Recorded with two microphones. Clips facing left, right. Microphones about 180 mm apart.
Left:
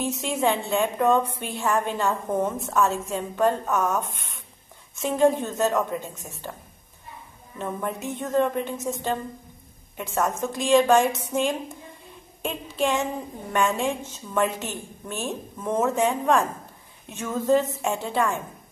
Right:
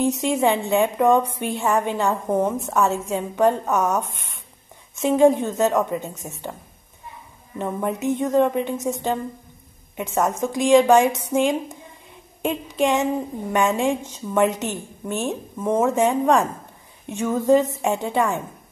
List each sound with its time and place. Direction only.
0.0 s a woman's voice: 15° right (ahead or behind)
5.0 s a woman's voice: 15° right (ahead or behind)
7.5 s a woman's voice: 15° right (ahead or behind)